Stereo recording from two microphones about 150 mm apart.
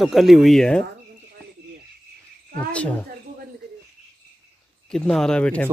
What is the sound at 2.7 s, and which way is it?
Speech, 10° left (ahead or behind).